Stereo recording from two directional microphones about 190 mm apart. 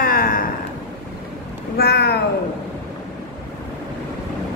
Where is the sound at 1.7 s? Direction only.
60° left (ahead or behind).